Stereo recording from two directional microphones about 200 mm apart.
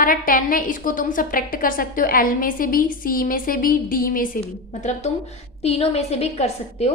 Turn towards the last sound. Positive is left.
turn(degrees=30)  # may be behind; listen again after turning